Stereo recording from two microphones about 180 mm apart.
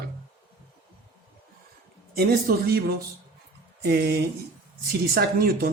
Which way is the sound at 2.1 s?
60° right (ahead or behind).